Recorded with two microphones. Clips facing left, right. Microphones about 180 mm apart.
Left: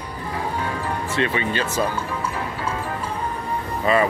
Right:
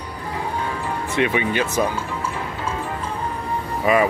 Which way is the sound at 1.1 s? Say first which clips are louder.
Right 4 dB; 15° right (ahead or behind).